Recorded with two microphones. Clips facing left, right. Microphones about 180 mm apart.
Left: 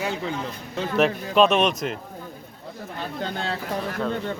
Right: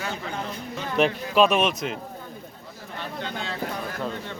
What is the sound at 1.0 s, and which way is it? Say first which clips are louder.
Speech: left 1 dB; centre (ahead or behind).